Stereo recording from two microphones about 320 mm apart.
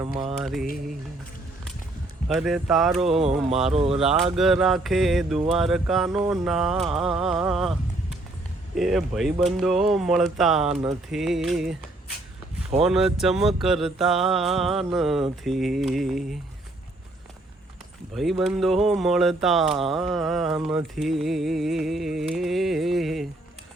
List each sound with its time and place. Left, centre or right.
0.0 s mantra: centre
0.3 s speech: centre
2.2 s speech: centre
3.7 s mantra: centre
4.0 s speech: centre
12.8 s speech: centre
18.1 s speech: centre